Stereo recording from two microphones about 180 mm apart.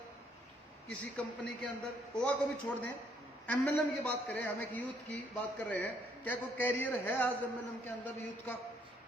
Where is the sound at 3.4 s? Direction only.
10° left (ahead or behind).